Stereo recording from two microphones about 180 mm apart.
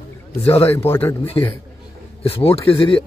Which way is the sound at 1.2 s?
30° left (ahead or behind).